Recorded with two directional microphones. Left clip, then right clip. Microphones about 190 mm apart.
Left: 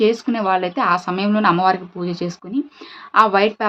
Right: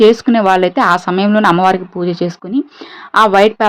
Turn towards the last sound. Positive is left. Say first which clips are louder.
# right 6 dB
turn(degrees=-35)  # may be behind; listen again after turning